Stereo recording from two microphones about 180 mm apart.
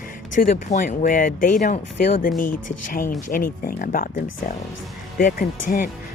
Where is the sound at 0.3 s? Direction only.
45° left (ahead or behind).